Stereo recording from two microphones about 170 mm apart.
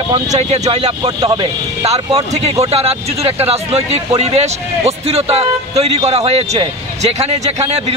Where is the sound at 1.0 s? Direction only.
25° right (ahead or behind).